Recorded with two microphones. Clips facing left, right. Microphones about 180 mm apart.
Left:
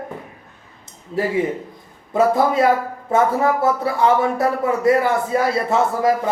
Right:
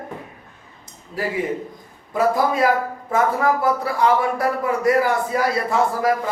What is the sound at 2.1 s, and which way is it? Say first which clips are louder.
Speech: left 3 dB; 25° left (ahead or behind).